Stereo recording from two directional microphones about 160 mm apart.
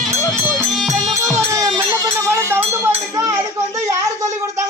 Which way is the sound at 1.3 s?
20° right (ahead or behind).